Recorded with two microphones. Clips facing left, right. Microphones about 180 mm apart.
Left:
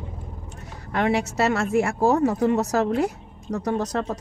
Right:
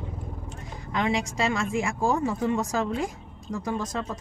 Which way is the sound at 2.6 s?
70° left (ahead or behind).